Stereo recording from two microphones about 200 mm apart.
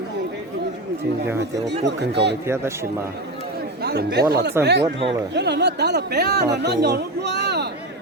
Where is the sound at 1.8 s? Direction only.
60° right (ahead or behind).